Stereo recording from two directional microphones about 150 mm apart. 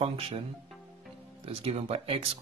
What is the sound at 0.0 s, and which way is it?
Speech, 40° right (ahead or behind).